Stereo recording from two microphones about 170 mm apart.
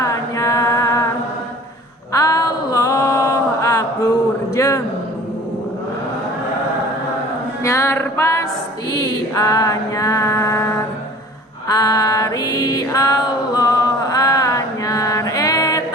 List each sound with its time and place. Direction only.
0.0 s chant: 20° left (ahead or behind)
2.1 s mantra: 20° left (ahead or behind)
4.5 s a sound: 20° left (ahead or behind)
7.6 s music: 15° left (ahead or behind)